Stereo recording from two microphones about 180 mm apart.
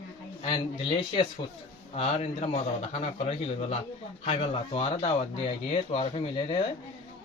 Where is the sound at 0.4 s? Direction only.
30° left (ahead or behind).